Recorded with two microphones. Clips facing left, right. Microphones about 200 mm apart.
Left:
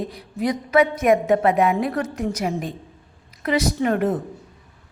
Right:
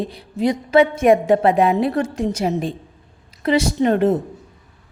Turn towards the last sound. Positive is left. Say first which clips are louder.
# right 4 dB
turn(degrees=-25)  # may be behind; listen again after turning